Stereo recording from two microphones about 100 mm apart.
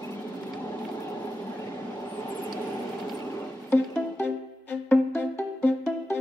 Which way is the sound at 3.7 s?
20° left (ahead or behind).